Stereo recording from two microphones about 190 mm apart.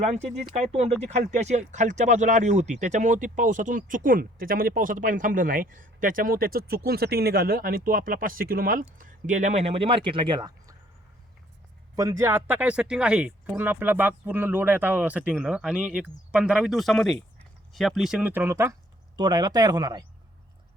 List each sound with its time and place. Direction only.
0.0 s speech: 35° right (ahead or behind)
11.9 s speech: 15° right (ahead or behind)